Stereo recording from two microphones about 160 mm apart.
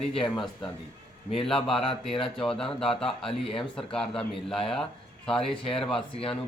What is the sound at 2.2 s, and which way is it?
Speech, 5° left (ahead or behind).